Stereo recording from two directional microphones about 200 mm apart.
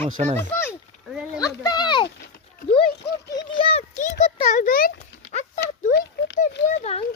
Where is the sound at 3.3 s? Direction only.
30° left (ahead or behind).